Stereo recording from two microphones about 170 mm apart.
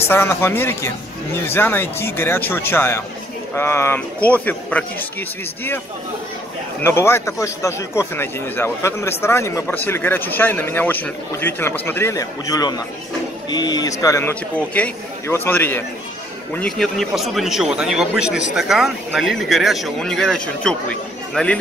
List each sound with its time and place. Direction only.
0.1 s speech: 15° left (ahead or behind)
6.8 s speech: 15° left (ahead or behind)